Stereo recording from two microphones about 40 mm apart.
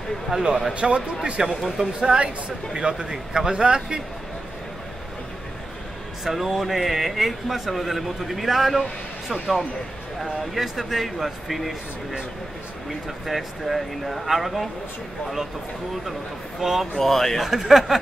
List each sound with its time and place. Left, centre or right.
0.3 s speech: centre
1.4 s speech: centre
6.2 s speech: centre
9.3 s speech: centre
13.3 s speech: centre
16.1 s speech: centre
17.0 s speech: centre
17.4 s speech: centre